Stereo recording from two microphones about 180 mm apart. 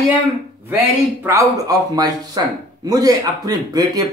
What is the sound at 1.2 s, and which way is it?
Speech, 15° right (ahead or behind).